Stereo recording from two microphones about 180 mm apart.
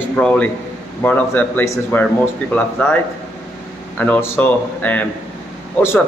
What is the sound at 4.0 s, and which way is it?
A man's voice, 10° left (ahead or behind).